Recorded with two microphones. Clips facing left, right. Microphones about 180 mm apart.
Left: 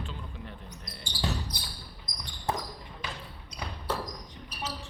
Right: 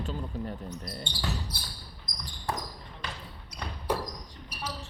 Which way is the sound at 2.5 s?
20° left (ahead or behind).